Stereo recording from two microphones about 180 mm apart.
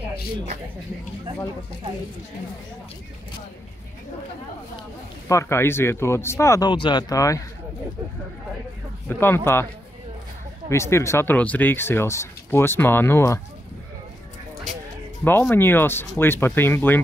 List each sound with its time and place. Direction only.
5.3 s speech: 15° left (ahead or behind)
9.2 s speech: 15° left (ahead or behind)
10.7 s speech: 15° left (ahead or behind)
15.2 s speech: 10° left (ahead or behind)